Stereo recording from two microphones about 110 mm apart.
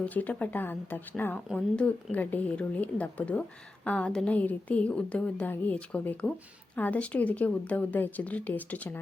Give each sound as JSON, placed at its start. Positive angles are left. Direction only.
{"t": 0.0, "sound": "speech", "side_deg": 15}